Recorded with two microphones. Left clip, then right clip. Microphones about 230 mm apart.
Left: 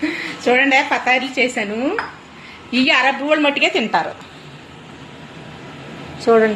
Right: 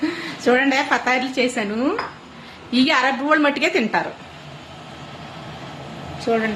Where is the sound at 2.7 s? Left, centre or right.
Centre.